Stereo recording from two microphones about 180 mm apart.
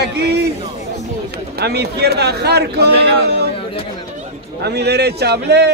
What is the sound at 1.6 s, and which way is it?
A man's voice, 65° right (ahead or behind).